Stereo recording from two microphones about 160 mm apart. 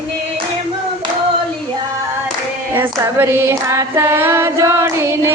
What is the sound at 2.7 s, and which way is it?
Female singing, 15° right (ahead or behind).